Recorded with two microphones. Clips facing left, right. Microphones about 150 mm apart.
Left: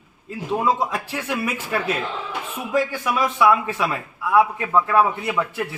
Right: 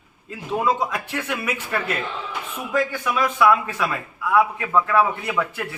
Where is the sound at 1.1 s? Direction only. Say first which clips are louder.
Even; 10° left (ahead or behind).